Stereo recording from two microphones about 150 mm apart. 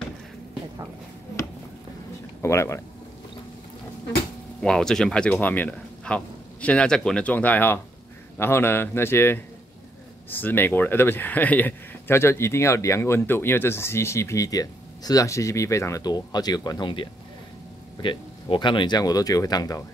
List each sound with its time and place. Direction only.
2.4 s speech: 20° left (ahead or behind)
4.6 s speech: 5° left (ahead or behind); by 19.8 s 25° left (ahead or behind)